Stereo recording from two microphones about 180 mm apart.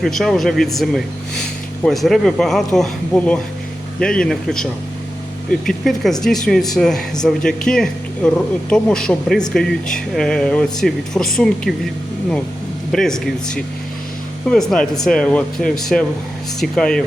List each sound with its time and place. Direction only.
0.0 s speech: centre (ahead or behind)
12.9 s speech: 5° left (ahead or behind)